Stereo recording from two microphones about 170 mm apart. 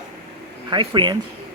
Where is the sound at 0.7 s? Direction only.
30° right (ahead or behind).